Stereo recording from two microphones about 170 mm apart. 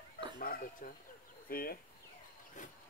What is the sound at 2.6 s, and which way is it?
Speech, 50° left (ahead or behind).